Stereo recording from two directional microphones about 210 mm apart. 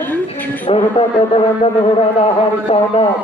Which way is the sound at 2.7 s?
25° left (ahead or behind).